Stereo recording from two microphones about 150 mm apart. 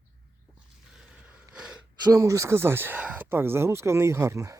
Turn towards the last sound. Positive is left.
turn(degrees=-20)  # may be behind; listen again after turning